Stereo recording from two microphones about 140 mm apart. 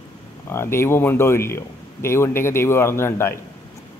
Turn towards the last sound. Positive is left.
turn(degrees=20)  # may be behind; listen again after turning